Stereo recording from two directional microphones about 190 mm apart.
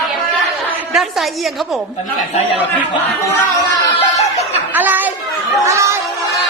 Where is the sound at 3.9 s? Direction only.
35° left (ahead or behind).